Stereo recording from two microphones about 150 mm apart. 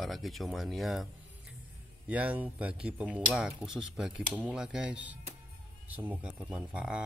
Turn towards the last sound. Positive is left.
turn(degrees=-5)  # may be behind; listen again after turning